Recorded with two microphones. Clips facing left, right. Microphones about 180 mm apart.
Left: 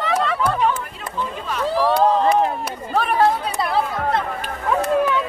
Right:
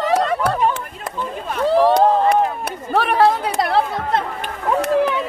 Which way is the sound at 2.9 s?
70° right (ahead or behind).